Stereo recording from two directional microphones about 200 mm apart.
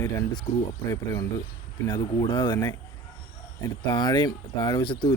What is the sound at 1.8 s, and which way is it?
Speech, 20° left (ahead or behind).